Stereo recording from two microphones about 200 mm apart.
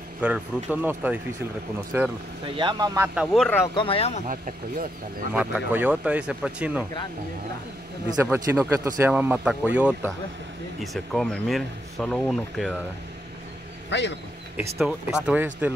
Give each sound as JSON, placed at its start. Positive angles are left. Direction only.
{"t": 0.2, "sound": "speech", "side_deg": -5}
{"t": 2.4, "sound": "speech", "side_deg": -25}
{"t": 3.2, "sound": "speech", "side_deg": 0}
{"t": 3.7, "sound": "speech", "side_deg": 30}
{"t": 4.3, "sound": "speech", "side_deg": -40}
{"t": 5.3, "sound": "speech", "side_deg": -10}
{"t": 8.1, "sound": "speech", "side_deg": -15}
{"t": 13.8, "sound": "speech", "side_deg": 60}
{"t": 14.8, "sound": "speech", "side_deg": -5}